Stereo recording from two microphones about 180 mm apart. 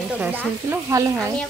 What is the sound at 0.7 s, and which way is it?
Frying, 15° right (ahead or behind).